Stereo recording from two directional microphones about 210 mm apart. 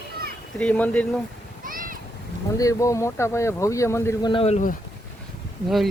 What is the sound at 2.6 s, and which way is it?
Speech, 15° left (ahead or behind).